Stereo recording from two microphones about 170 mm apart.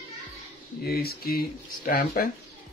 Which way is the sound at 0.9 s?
65° left (ahead or behind).